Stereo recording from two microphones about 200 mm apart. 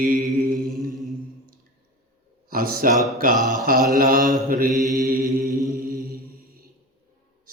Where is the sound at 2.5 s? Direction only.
45° right (ahead or behind).